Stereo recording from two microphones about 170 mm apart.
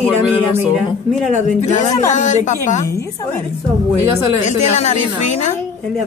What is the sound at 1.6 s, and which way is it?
Speech, 45° left (ahead or behind).